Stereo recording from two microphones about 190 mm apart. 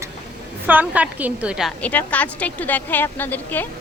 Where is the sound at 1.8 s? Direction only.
10° left (ahead or behind).